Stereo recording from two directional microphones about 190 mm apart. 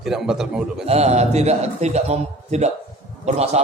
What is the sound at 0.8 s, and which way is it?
A man's voice, 35° right (ahead or behind).